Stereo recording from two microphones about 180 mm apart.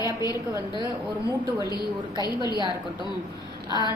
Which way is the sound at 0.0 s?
20° left (ahead or behind).